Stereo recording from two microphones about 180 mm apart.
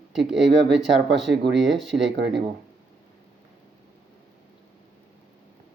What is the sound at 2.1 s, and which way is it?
Speech, 70° right (ahead or behind).